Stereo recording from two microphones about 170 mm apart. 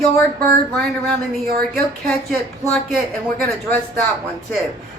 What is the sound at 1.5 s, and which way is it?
Speech, 60° right (ahead or behind).